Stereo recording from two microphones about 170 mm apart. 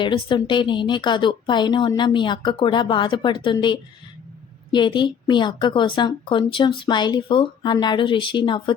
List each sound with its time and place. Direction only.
0.0 s speech: 30° left (ahead or behind)